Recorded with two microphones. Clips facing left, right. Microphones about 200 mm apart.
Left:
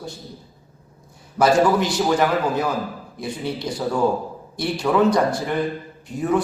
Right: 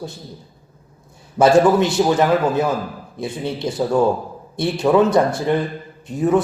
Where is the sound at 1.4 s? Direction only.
25° right (ahead or behind).